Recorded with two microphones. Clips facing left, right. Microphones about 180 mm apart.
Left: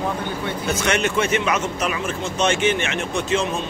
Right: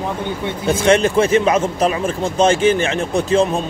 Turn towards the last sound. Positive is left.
turn(degrees=-35)  # may be behind; listen again after turning